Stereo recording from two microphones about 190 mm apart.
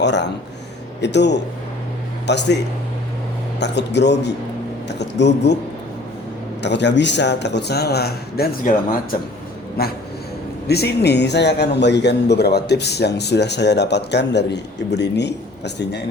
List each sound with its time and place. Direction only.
0.0 s a man's voice: 65° left (ahead or behind)
3.6 s a man's voice: 65° left (ahead or behind)
6.6 s a man's voice: 65° left (ahead or behind)
10.7 s a man's voice: 60° left (ahead or behind)